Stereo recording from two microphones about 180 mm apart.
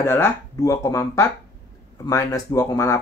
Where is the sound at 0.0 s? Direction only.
15° left (ahead or behind).